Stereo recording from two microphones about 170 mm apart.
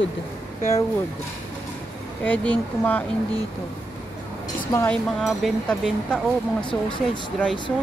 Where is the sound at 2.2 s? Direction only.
10° left (ahead or behind).